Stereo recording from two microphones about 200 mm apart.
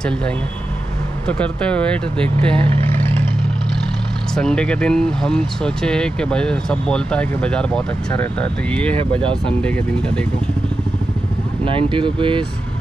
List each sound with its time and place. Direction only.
1.2 s speech: 5° left (ahead or behind)
4.4 s speech: 5° left (ahead or behind)
8.9 s speech: 25° right (ahead or behind)
9.5 s speech: 5° left (ahead or behind)
11.6 s speech: 25° right (ahead or behind)